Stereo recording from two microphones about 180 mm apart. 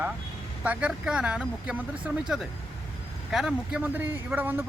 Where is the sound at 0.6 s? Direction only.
5° right (ahead or behind).